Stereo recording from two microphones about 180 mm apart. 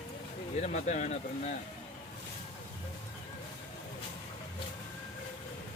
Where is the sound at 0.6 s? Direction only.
40° left (ahead or behind).